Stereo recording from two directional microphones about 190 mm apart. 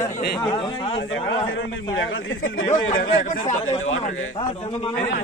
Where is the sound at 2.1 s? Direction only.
90° left.